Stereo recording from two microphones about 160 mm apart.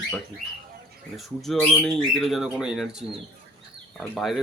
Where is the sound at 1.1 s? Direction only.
Centre (ahead or behind).